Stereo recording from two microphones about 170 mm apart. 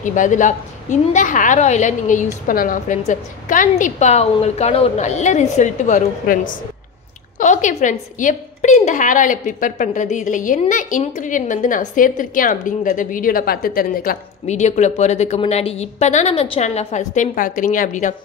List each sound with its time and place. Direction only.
0.0 s a woman's voice: 50° left (ahead or behind)
14.4 s a woman's voice: 40° left (ahead or behind)